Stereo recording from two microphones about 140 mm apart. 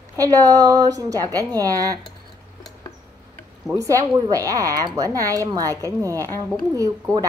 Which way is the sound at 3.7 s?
25° right (ahead or behind).